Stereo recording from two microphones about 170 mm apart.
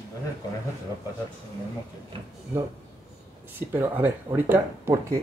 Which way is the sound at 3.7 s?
10° right (ahead or behind).